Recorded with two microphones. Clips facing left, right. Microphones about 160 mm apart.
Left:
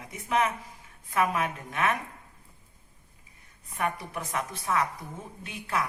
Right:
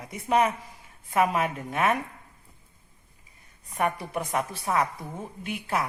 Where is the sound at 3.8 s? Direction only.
30° right (ahead or behind).